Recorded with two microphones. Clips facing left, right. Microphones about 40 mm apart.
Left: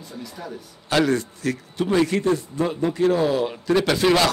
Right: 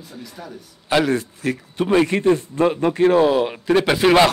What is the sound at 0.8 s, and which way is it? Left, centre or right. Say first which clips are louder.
A man's voice: right 2 dB; centre.